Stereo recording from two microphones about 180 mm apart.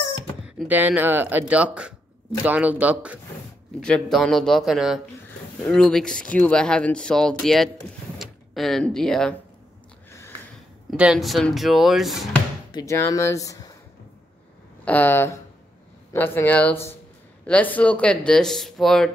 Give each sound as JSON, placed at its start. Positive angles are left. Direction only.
{"t": 0.6, "sound": "speech", "side_deg": -10}
{"t": 3.8, "sound": "speech", "side_deg": 5}
{"t": 10.9, "sound": "speech", "side_deg": 0}
{"t": 12.7, "sound": "speech", "side_deg": 15}
{"t": 14.9, "sound": "speech", "side_deg": 10}